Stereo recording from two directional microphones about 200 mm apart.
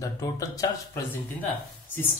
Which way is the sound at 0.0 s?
15° left (ahead or behind).